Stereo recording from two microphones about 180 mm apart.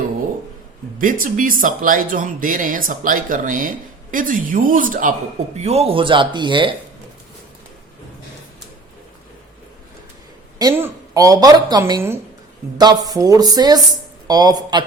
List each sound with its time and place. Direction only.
0.9 s speech: 50° right (ahead or behind)
5.5 s a woman's voice: 35° right (ahead or behind)
10.6 s a woman's voice: 15° right (ahead or behind)